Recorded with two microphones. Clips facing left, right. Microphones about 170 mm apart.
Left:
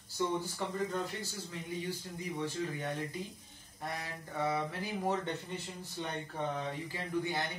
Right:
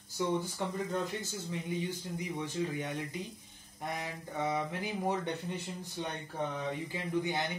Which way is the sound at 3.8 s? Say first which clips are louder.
Right 2 dB; 20° right (ahead or behind).